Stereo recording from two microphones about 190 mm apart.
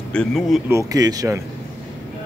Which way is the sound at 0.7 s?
20° right (ahead or behind).